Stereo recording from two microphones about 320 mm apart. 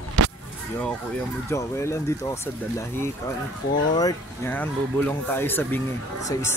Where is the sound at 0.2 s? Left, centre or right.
Right.